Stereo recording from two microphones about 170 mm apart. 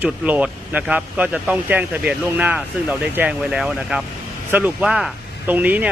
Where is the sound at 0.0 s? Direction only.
10° right (ahead or behind).